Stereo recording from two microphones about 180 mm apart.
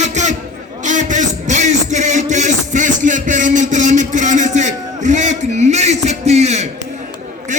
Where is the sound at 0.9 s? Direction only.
45° right (ahead or behind).